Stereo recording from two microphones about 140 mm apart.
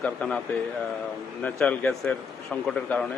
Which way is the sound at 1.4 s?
10° left (ahead or behind).